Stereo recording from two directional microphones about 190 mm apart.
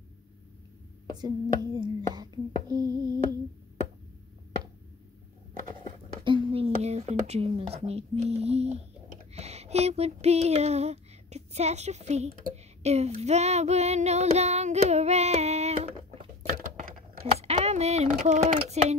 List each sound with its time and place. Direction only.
1.1 s speech: 20° right (ahead or behind)
6.2 s speech: 30° right (ahead or behind)
9.3 s a sound: 35° right (ahead or behind)
12.8 s child singing: 35° right (ahead or behind)
17.3 s speech: 35° right (ahead or behind)